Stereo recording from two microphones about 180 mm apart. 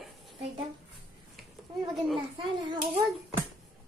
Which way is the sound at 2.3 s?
30° right (ahead or behind).